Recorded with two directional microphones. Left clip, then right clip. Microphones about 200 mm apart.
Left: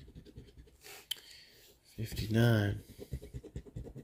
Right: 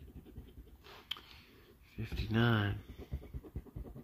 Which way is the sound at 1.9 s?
10° left (ahead or behind).